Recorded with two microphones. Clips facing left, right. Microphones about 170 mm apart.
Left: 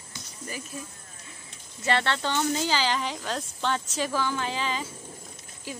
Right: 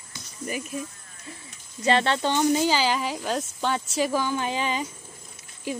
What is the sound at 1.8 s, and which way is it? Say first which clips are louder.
Speech: right 4 dB; 15° right (ahead or behind).